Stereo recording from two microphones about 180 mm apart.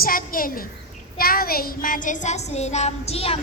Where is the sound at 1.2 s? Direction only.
55° left (ahead or behind).